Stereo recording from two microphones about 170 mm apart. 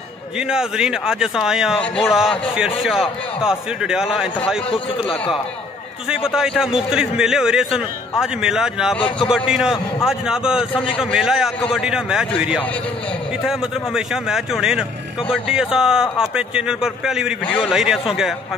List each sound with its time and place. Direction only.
0.4 s a man's voice: 5° right (ahead or behind)
6.0 s a man's voice: 5° right (ahead or behind)
10.9 s a man's voice: 30° left (ahead or behind)
11.1 s a man's voice: 5° right (ahead or behind)